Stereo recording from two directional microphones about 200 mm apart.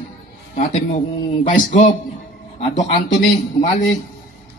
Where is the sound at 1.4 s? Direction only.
35° left (ahead or behind).